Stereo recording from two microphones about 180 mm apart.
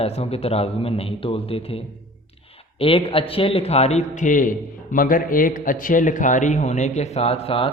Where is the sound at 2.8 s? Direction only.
30° left (ahead or behind).